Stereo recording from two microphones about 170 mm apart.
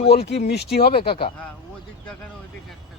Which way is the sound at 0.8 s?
35° left (ahead or behind).